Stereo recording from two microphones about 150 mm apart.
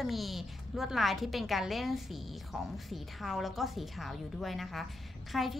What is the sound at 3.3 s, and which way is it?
A woman's voice, centre (ahead or behind).